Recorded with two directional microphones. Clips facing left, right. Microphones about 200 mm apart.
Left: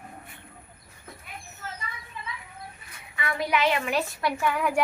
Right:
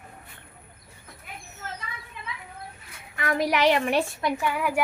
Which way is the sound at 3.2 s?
45° right (ahead or behind).